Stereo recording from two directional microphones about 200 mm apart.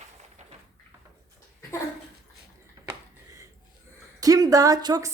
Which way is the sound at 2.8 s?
20° right (ahead or behind).